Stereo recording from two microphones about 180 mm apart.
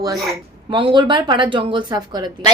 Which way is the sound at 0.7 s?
25° right (ahead or behind).